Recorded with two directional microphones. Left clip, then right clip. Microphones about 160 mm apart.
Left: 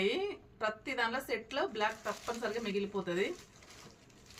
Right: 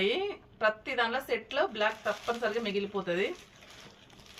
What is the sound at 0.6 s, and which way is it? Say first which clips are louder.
Speech: right 6 dB; 30° left (ahead or behind).